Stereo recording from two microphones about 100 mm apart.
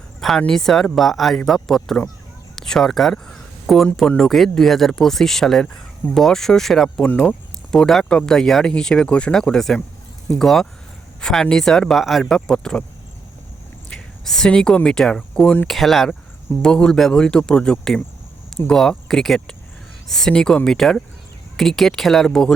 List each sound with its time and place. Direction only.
0.2 s speech: 5° left (ahead or behind)
13.9 s a sound: 5° left (ahead or behind)
14.8 s speech: 5° left (ahead or behind)